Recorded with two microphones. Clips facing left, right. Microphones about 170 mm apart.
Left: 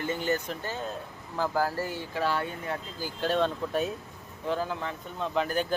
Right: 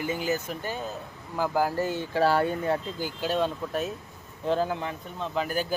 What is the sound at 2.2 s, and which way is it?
Speech, 35° right (ahead or behind).